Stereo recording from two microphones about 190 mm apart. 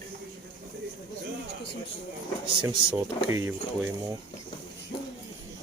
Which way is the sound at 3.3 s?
10° right (ahead or behind).